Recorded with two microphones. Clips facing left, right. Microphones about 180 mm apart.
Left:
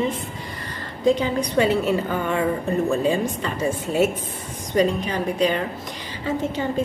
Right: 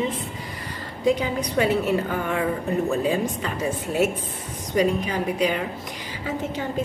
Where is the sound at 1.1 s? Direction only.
5° right (ahead or behind).